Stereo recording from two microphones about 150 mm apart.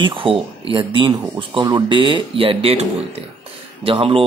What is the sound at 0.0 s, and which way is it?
Speech, 35° right (ahead or behind).